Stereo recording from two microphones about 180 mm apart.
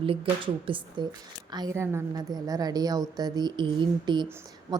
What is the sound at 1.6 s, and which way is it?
A woman's voice, 15° right (ahead or behind).